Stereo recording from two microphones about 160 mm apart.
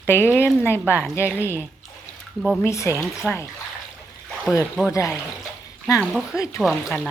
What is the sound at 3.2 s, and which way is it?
Speech, centre (ahead or behind).